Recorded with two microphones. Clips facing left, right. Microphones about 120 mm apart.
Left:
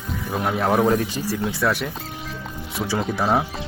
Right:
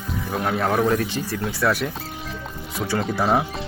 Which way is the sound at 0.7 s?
20° left (ahead or behind).